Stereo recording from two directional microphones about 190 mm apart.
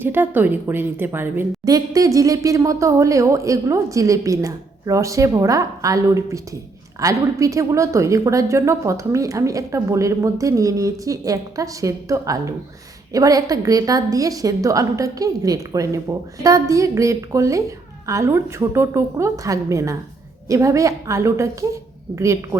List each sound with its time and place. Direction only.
0.0 s a woman's voice: 10° right (ahead or behind)